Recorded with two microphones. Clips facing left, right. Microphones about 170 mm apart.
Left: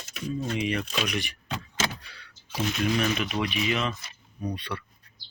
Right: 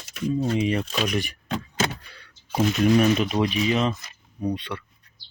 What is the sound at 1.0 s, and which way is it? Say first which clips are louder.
Speech: right 5 dB; 45° right (ahead or behind).